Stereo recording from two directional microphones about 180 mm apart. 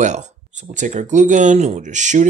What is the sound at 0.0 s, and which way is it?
Speech, 40° right (ahead or behind).